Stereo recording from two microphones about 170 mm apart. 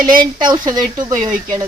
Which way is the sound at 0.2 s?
25° right (ahead or behind).